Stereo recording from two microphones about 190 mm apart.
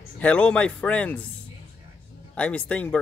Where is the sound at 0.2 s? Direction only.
5° left (ahead or behind).